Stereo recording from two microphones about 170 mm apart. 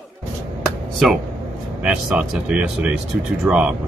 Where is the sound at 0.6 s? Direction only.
Centre (ahead or behind).